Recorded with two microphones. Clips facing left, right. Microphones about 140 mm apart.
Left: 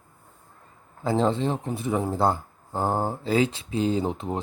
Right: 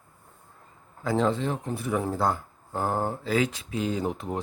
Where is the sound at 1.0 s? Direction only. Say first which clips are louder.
Left 2 dB; 30° left (ahead or behind).